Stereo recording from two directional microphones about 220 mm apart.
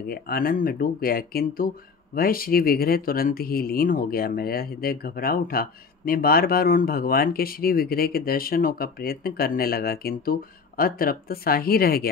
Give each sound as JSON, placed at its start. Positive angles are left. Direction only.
{"t": 0.1, "sound": "speech", "side_deg": 40}